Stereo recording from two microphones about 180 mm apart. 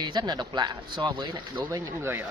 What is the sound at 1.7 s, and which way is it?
Speech, 15° right (ahead or behind).